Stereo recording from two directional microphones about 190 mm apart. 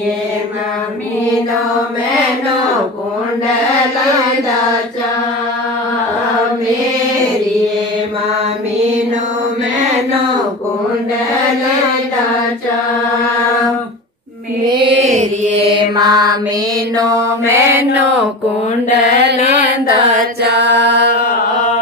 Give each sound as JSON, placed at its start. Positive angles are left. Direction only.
{"t": 15.1, "sound": "mantra", "side_deg": -35}
{"t": 15.8, "sound": "mantra", "side_deg": -20}
{"t": 18.9, "sound": "mantra", "side_deg": -65}
{"t": 20.4, "sound": "mantra", "side_deg": -65}